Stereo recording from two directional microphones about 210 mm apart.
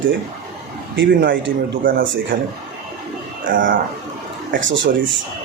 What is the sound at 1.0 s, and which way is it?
Speech, 55° right (ahead or behind).